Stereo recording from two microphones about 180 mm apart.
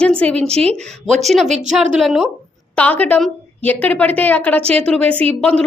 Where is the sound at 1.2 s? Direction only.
Centre (ahead or behind).